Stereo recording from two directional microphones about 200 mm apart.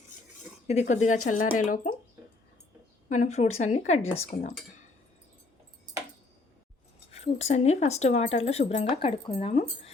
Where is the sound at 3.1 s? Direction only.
35° left (ahead or behind).